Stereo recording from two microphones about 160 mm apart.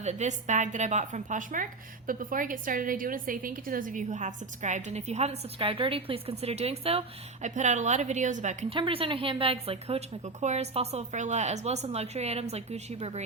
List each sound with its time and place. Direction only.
0.0 s a woman's voice: 45° right (ahead or behind)
8.7 s a woman's voice: 35° right (ahead or behind)